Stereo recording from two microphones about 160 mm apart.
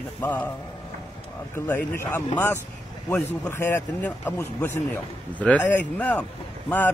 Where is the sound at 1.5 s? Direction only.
10° left (ahead or behind).